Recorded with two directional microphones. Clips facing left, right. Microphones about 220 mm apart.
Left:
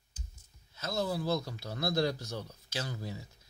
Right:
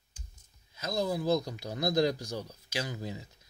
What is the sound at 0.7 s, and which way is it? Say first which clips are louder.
Speech: right 2 dB; 15° right (ahead or behind).